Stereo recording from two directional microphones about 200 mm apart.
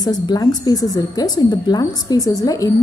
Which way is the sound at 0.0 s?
20° left (ahead or behind).